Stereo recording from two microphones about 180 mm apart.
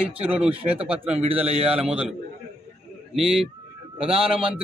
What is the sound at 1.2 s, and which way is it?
Speech, 35° right (ahead or behind).